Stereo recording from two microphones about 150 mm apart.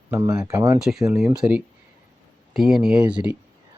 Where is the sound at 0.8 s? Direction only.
Centre (ahead or behind).